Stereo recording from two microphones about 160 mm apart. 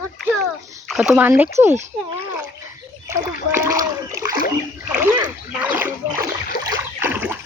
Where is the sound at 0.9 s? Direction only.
5° right (ahead or behind).